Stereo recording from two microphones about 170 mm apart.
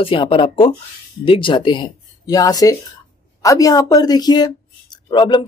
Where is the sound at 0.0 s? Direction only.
30° left (ahead or behind).